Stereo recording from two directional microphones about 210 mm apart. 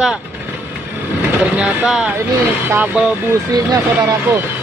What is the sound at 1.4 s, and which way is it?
Speech, 5° right (ahead or behind).